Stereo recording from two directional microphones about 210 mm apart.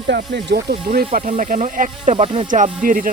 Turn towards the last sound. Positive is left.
turn(degrees=-40)  # may be behind; listen again after turning